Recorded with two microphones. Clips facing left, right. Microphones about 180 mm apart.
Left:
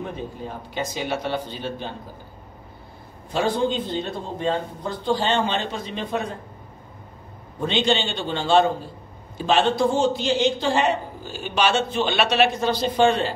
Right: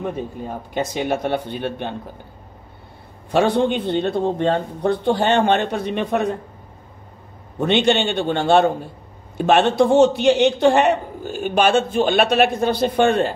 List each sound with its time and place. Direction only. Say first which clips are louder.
0.5 s a man's voice: right 6 dB; 55° right (ahead or behind)
3.3 s a man's voice: right 5 dB; 70° right (ahead or behind)
7.5 s a man's voice: right 5 dB; 65° right (ahead or behind)